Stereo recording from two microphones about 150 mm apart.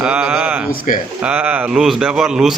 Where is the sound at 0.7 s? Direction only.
65° left (ahead or behind).